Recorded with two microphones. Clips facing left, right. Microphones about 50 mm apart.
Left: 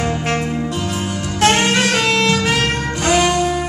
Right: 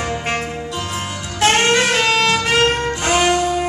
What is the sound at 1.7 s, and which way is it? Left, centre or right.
Music, centre.